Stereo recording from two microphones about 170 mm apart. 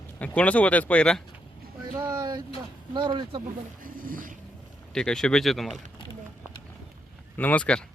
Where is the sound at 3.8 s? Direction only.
55° right (ahead or behind).